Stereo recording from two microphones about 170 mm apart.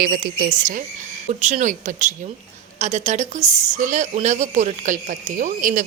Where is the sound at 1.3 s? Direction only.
45° right (ahead or behind).